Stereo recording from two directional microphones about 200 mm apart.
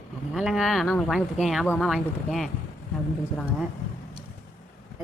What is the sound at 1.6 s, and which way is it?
Speech, 10° left (ahead or behind).